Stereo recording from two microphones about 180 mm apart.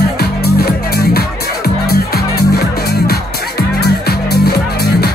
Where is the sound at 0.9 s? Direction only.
60° left (ahead or behind).